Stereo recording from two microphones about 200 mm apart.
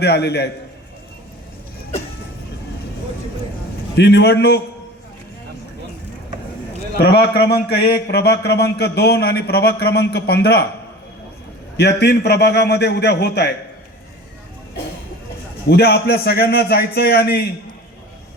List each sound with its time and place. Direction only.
0.0 s a man's voice: 55° left (ahead or behind)
3.9 s a man's voice: 55° left (ahead or behind)
6.9 s a man's voice: 55° left (ahead or behind)
11.8 s a man's voice: 55° left (ahead or behind)
15.7 s a man's voice: 55° left (ahead or behind)